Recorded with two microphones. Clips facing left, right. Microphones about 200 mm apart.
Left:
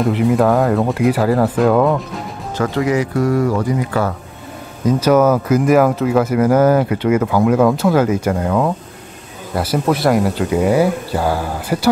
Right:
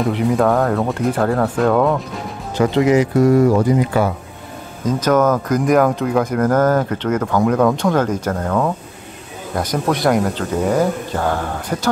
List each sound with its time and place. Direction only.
0.0 s speech: centre (ahead or behind)
2.6 s speech: 20° right (ahead or behind)
4.8 s speech: 10° left (ahead or behind)